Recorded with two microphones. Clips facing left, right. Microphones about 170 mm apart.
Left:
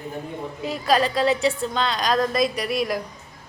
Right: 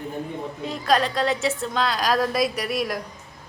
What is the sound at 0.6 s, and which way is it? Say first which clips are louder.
A woman's voice: left 1 dB; 5° left (ahead or behind).